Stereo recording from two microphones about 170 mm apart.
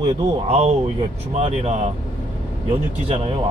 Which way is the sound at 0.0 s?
40° right (ahead or behind).